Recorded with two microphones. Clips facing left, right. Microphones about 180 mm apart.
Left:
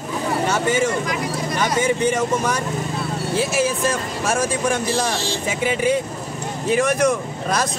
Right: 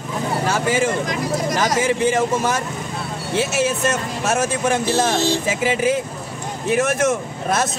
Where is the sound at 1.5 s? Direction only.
90° right.